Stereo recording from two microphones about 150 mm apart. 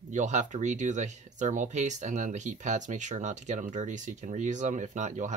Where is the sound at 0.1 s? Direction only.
55° right (ahead or behind).